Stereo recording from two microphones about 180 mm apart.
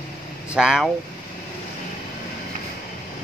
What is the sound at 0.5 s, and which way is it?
Speech, 5° right (ahead or behind).